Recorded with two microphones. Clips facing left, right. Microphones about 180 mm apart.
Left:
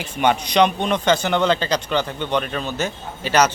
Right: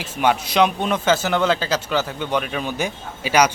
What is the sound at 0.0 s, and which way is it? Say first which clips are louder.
Speech: even; 5° right (ahead or behind).